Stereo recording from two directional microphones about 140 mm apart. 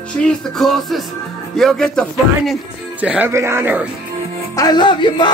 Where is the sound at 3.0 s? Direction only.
10° right (ahead or behind).